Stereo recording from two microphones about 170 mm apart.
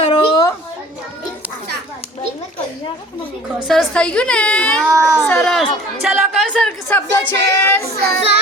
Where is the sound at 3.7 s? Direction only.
5° left (ahead or behind).